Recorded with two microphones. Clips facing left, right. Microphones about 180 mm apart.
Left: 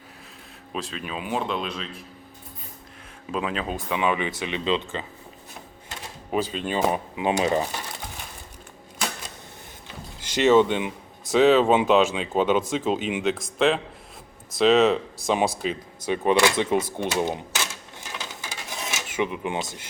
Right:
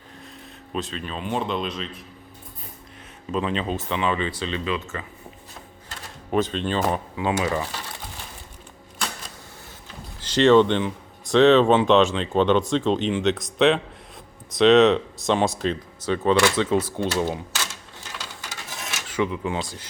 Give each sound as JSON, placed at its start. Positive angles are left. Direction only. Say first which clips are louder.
{"t": 0.7, "sound": "speech", "louder": "right 2 dB", "side_deg": 0}
{"t": 3.3, "sound": "speech", "louder": "right 3 dB", "side_deg": 5}
{"t": 4.6, "sound": "speech", "louder": "left 3 dB", "side_deg": 25}
{"t": 6.3, "sound": "speech", "louder": "right 2 dB", "side_deg": 5}
{"t": 10.2, "sound": "speech", "louder": "right 2 dB", "side_deg": 10}
{"t": 18.9, "sound": "speech", "louder": "right 2 dB", "side_deg": 20}